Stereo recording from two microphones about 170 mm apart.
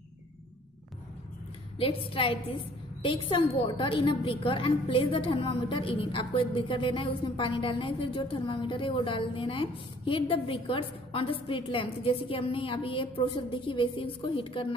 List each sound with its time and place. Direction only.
2.1 s a woman's voice: 35° left (ahead or behind)